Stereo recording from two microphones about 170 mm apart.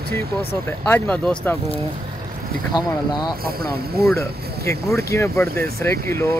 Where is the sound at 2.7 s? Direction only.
25° left (ahead or behind).